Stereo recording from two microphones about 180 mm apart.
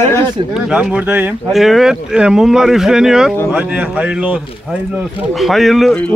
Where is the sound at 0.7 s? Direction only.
5° right (ahead or behind).